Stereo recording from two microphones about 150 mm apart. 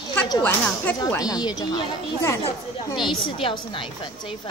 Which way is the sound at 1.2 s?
25° left (ahead or behind).